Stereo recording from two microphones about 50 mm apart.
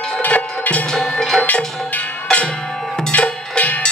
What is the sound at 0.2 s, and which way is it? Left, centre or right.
Music, left.